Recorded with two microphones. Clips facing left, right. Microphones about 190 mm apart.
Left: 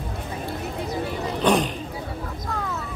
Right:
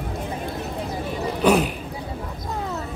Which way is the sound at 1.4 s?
5° right (ahead or behind).